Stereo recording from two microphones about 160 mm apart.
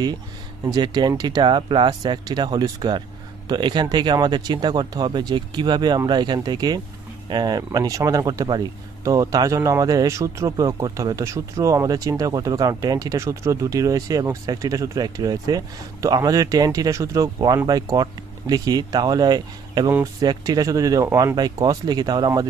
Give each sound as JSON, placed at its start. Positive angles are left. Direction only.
{"t": 0.7, "sound": "speech", "side_deg": -25}